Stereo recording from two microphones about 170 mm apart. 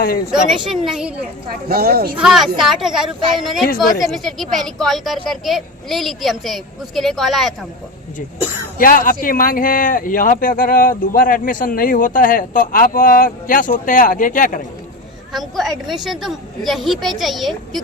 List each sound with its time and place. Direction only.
0.3 s speech: 5° right (ahead or behind)
1.7 s a child's voice: 65° right (ahead or behind)
2.1 s speech: centre (ahead or behind)
8.8 s speech: 55° left (ahead or behind)
15.3 s speech: centre (ahead or behind)